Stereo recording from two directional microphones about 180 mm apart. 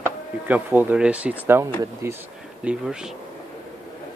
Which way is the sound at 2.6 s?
5° right (ahead or behind).